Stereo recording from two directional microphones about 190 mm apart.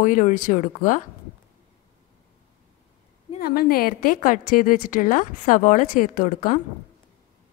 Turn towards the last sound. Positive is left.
turn(degrees=40)  # may be behind; listen again after turning